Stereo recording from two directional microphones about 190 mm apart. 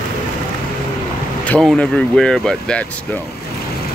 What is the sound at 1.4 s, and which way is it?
Speech, 5° left (ahead or behind).